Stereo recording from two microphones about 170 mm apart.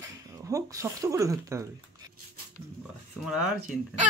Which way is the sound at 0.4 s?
20° right (ahead or behind).